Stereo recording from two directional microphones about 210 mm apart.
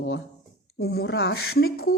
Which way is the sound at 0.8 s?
50° left (ahead or behind).